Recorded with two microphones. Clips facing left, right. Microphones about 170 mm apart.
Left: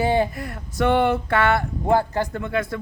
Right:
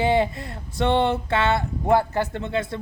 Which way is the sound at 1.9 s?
15° left (ahead or behind).